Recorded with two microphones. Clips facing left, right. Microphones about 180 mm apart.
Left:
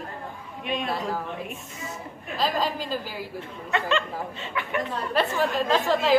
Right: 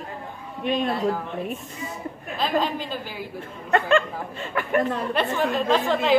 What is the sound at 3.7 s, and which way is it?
Speech, 45° right (ahead or behind).